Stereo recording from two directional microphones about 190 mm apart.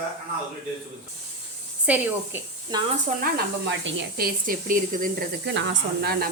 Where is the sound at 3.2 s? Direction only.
65° right (ahead or behind).